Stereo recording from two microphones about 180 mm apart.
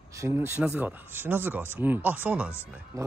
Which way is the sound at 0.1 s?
15° right (ahead or behind).